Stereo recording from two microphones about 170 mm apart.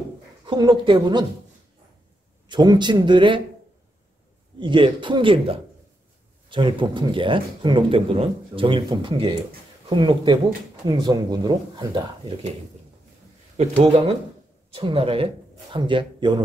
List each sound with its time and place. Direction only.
0.5 s speech: 25° right (ahead or behind)
2.4 s speech: 25° right (ahead or behind)
4.6 s speech: 30° right (ahead or behind)
13.6 s speech: 35° right (ahead or behind)